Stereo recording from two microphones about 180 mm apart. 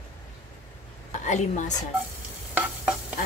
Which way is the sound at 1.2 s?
40° left (ahead or behind).